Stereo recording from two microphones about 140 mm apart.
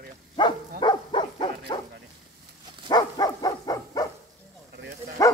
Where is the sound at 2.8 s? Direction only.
30° left (ahead or behind).